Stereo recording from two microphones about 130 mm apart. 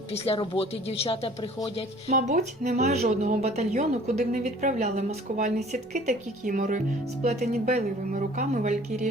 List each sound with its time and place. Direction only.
0.1 s a woman's voice: 45° left (ahead or behind)
2.1 s a woman's voice: 70° right (ahead or behind)